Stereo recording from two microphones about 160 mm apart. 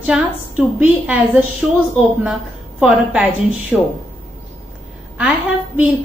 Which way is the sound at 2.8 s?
5° right (ahead or behind).